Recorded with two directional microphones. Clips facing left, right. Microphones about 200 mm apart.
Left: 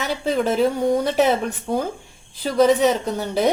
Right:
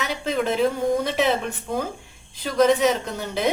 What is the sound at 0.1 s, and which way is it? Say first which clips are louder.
A woman's voice: left 5 dB; 35° left (ahead or behind).